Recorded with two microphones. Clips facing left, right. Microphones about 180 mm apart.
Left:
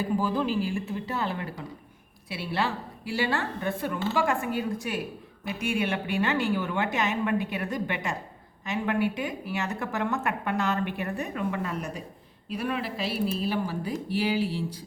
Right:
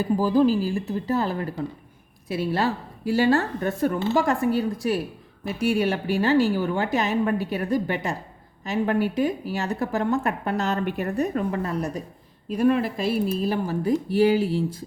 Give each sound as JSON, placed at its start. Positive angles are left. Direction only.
{"t": 0.2, "sound": "speech", "side_deg": -35}